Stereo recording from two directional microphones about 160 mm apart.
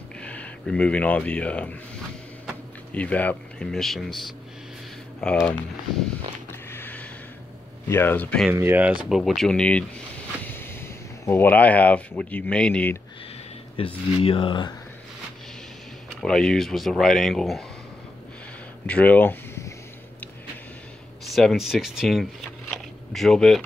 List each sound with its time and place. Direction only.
0.2 s speech: 10° left (ahead or behind)
2.9 s speech: 10° left (ahead or behind)
6.7 s a sound: 10° left (ahead or behind)
7.9 s speech: 15° left (ahead or behind)
8.5 s speech: 15° right (ahead or behind); by 13.0 s 10° left (ahead or behind)
13.7 s speech: 35° left (ahead or behind)
16.2 s speech: 5° left (ahead or behind)
18.9 s speech: 10° left (ahead or behind)
21.3 s speech: centre (ahead or behind)